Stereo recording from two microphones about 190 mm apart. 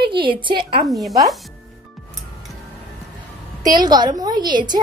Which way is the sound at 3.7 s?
20° right (ahead or behind).